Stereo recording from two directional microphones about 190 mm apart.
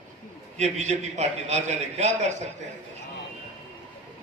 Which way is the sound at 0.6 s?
35° right (ahead or behind).